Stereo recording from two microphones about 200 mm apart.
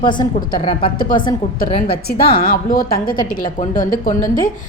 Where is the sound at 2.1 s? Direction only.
25° left (ahead or behind).